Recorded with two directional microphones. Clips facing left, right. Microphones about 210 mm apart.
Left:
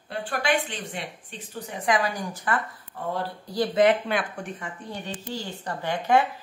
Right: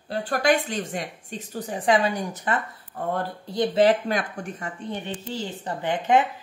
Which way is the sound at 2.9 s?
45° right (ahead or behind).